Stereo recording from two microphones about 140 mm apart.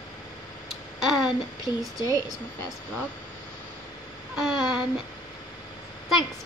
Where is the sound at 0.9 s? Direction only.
Centre (ahead or behind).